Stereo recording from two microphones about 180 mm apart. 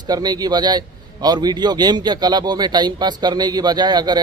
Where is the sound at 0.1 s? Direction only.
20° right (ahead or behind).